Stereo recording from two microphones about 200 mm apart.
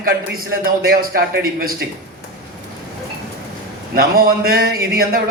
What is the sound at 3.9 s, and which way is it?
A man's voice, 45° right (ahead or behind).